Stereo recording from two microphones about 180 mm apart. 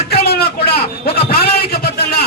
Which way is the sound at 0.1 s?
60° left (ahead or behind).